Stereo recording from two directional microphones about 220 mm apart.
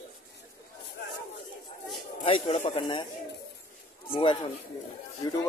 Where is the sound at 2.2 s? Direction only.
25° left (ahead or behind).